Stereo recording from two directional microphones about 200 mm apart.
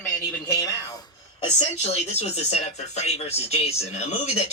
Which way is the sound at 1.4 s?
35° left (ahead or behind).